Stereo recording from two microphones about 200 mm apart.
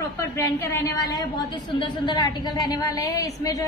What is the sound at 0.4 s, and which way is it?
A woman's voice, 10° left (ahead or behind).